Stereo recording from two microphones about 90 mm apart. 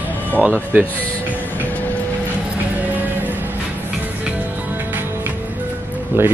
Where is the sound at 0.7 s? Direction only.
20° right (ahead or behind).